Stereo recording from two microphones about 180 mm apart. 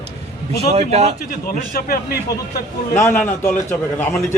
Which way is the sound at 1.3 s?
55° left (ahead or behind).